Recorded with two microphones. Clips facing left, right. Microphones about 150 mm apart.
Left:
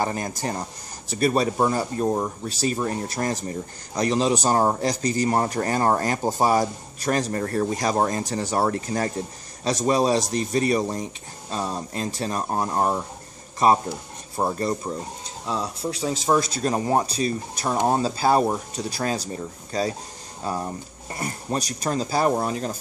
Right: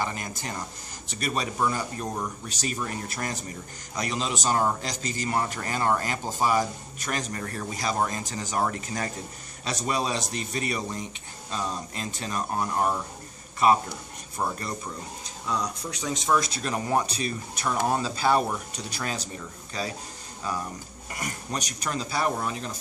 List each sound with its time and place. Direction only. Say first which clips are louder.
0.0 s speech: left 6 dB; 40° left (ahead or behind)